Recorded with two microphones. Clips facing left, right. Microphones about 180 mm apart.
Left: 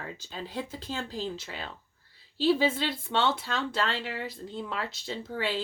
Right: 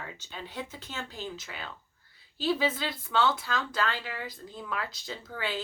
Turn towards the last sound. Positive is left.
turn(degrees=30)  # may be behind; listen again after turning